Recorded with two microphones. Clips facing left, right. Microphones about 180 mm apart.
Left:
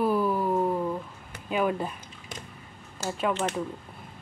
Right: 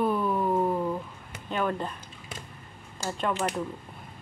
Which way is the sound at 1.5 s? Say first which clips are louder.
Left 2 dB; 10° left (ahead or behind).